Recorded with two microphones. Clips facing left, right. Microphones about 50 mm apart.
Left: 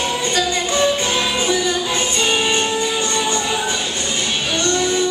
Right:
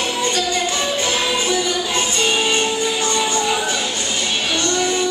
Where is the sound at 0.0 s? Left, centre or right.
Left.